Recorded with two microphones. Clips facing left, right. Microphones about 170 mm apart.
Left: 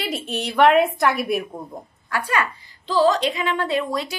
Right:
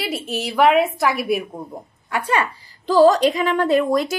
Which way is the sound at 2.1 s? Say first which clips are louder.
Right 2 dB; 25° right (ahead or behind).